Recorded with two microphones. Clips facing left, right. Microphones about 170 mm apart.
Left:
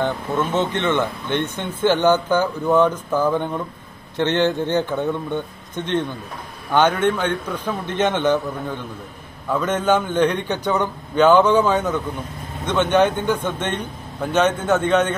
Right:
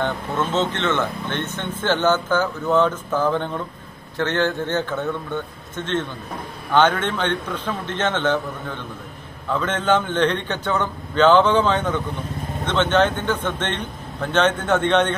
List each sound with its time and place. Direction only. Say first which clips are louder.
0.0 s speech: left 2 dB; 10° left (ahead or behind)